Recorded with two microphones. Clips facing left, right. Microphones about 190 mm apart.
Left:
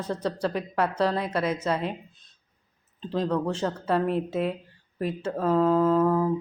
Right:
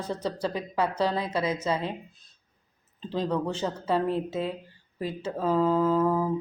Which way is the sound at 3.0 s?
Centre (ahead or behind).